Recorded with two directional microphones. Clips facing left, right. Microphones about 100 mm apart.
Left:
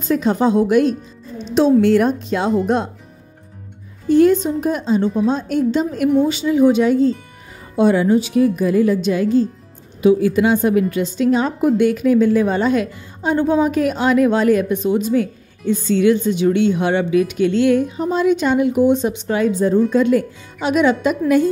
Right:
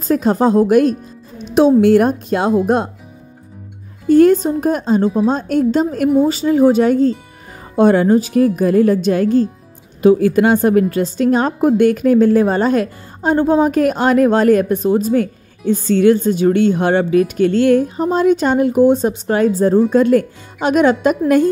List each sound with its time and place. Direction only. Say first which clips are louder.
0.1 s a woman's voice: right 3 dB; 40° right (ahead or behind)
4.1 s a woman's voice: right 3 dB; 50° right (ahead or behind)